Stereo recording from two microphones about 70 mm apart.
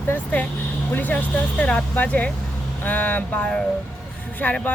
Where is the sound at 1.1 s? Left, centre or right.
Centre.